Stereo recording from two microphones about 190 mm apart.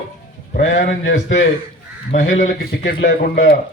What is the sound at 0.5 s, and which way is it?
Speech, 75° left (ahead or behind).